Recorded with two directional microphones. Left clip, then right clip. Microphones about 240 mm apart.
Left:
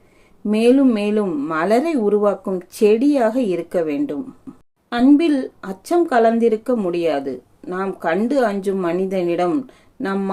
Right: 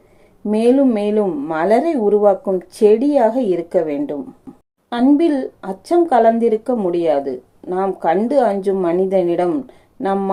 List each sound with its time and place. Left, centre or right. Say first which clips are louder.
0.5 s speech: right 1 dB; centre